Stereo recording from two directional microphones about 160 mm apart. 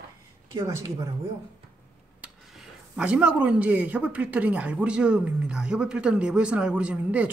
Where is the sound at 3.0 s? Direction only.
5° right (ahead or behind).